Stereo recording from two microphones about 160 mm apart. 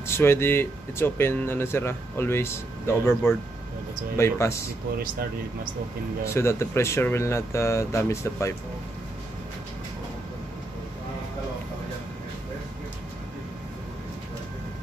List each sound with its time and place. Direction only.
0.0 s speech: 15° left (ahead or behind)
6.2 s speech: 15° left (ahead or behind)